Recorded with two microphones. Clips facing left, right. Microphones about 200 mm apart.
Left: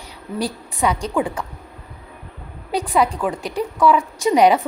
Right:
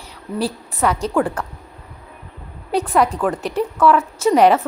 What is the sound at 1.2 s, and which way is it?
Speech, centre (ahead or behind).